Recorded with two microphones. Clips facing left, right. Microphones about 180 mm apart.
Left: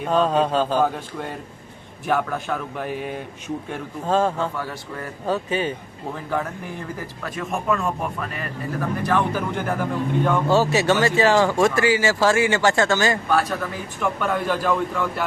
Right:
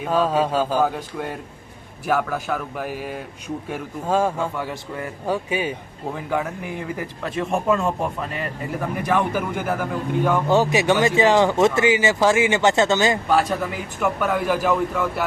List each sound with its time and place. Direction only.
0.0 s speech: 5° right (ahead or behind)
7.3 s a man's voice: 25° right (ahead or behind)
9.0 s speech: 10° right (ahead or behind)
10.5 s speech: 15° right (ahead or behind)